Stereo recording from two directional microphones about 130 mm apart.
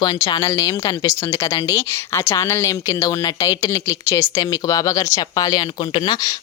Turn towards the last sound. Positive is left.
turn(degrees=30)  # may be behind; listen again after turning